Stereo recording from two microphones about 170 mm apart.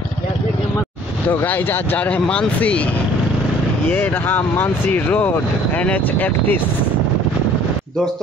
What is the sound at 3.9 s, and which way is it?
Speech, 10° left (ahead or behind).